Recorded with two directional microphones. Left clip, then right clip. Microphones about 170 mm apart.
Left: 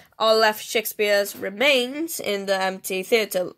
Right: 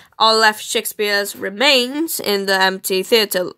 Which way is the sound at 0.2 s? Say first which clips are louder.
Right 5 dB; 15° right (ahead or behind).